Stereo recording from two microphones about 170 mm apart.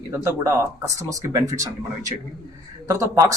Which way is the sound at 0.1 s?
15° right (ahead or behind).